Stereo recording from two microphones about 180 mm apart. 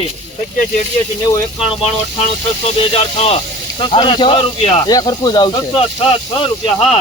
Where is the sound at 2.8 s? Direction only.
35° left (ahead or behind).